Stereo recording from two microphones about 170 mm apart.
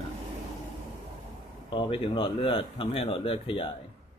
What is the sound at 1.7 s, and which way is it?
A man's voice, 30° left (ahead or behind).